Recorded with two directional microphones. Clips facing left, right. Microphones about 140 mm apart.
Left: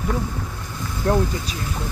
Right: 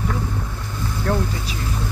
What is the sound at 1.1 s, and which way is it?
Speech, 20° left (ahead or behind).